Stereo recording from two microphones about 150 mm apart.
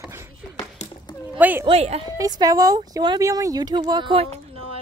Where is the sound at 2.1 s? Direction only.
25° right (ahead or behind).